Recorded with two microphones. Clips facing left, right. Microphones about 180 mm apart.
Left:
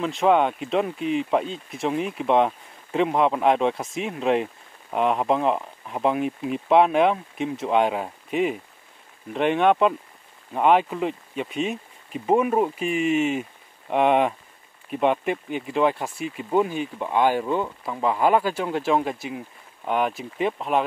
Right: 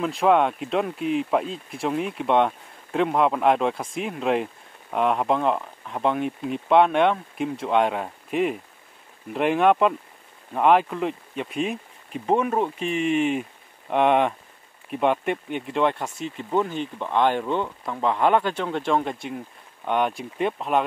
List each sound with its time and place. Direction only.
0.0 s speech: centre (ahead or behind)